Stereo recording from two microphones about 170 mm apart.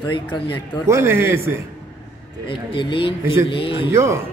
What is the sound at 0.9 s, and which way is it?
Speech, 15° right (ahead or behind).